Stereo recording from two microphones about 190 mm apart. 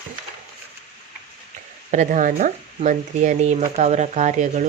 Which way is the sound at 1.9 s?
40° right (ahead or behind).